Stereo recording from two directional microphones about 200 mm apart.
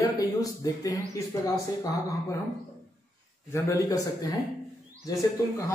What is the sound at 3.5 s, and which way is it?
Speech, 15° left (ahead or behind).